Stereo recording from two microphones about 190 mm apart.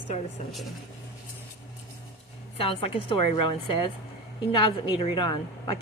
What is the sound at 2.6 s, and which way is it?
A woman's voice, 30° left (ahead or behind).